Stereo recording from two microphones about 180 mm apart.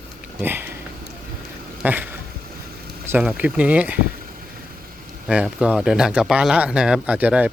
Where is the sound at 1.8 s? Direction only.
10° right (ahead or behind).